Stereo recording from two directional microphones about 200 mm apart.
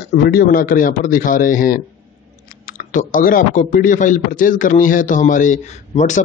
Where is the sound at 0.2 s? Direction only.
50° left (ahead or behind).